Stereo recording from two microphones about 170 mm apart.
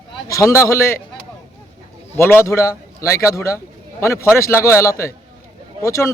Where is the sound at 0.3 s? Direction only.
20° left (ahead or behind).